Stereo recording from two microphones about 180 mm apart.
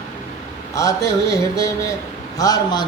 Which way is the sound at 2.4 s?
20° left (ahead or behind).